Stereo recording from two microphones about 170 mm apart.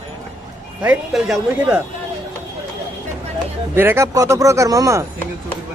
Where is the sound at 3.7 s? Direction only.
15° right (ahead or behind).